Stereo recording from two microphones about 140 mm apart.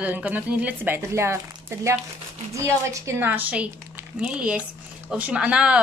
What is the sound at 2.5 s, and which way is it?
Speech, 20° right (ahead or behind).